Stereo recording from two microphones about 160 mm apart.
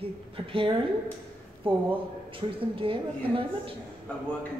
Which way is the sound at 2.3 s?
35° right (ahead or behind).